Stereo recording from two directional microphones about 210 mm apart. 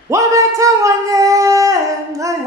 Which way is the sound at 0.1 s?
15° right (ahead or behind).